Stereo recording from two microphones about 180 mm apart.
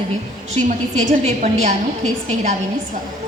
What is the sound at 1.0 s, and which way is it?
A woman's voice, 40° right (ahead or behind).